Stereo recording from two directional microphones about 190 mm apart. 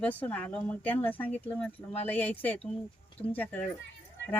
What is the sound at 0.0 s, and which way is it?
Speech, 10° left (ahead or behind).